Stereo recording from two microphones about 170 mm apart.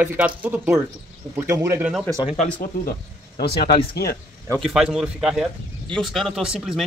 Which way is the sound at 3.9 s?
65° left (ahead or behind).